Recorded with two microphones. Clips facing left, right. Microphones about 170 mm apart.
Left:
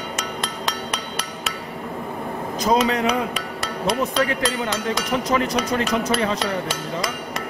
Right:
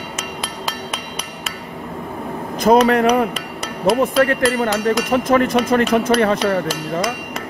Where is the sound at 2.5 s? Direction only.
55° right (ahead or behind).